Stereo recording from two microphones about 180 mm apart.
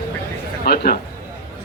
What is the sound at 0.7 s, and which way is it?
Speech, 55° left (ahead or behind).